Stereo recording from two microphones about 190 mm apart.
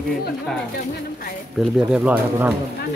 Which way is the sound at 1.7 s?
5° right (ahead or behind).